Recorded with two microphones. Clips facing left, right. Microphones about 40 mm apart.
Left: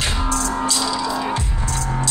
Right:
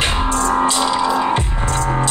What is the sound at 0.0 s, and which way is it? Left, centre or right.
Music, right.